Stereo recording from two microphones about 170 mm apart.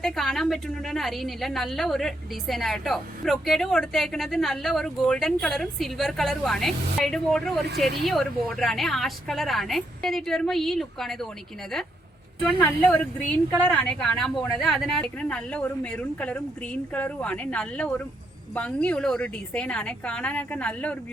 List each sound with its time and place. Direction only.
0.0 s a woman's voice: centre (ahead or behind)
12.5 s a woman's voice: 5° left (ahead or behind)